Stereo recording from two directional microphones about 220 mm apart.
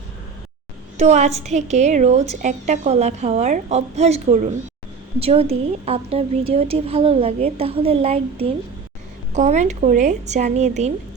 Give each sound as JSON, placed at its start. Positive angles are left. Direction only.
{"t": 0.9, "sound": "a woman's voice", "side_deg": -30}